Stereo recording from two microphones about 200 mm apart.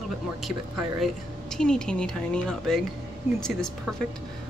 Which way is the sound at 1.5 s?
5° left (ahead or behind).